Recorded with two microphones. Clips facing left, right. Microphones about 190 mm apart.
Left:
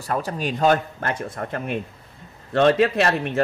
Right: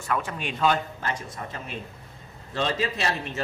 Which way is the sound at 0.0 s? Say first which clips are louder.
Left 4 dB; 35° left (ahead or behind).